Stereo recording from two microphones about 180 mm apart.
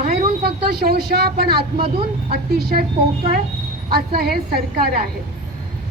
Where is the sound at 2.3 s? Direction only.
60° right (ahead or behind).